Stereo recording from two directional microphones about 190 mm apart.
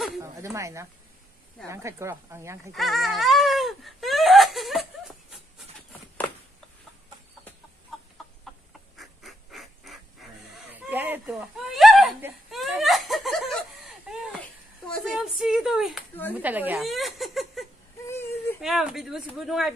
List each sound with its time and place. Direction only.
0.2 s speech: 15° right (ahead or behind)
2.7 s wail: centre (ahead or behind)
8.9 s a sound: centre (ahead or behind)
14.9 s speech: centre (ahead or behind)
18.0 s a sound: 15° left (ahead or behind)
18.6 s speech: centre (ahead or behind)